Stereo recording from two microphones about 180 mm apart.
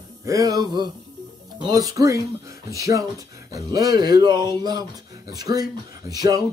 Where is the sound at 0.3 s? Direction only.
20° right (ahead or behind).